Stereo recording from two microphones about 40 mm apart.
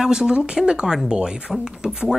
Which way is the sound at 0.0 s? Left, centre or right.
Centre.